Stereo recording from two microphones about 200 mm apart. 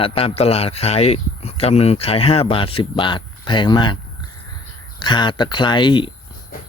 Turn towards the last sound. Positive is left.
turn(degrees=25)  # may be behind; listen again after turning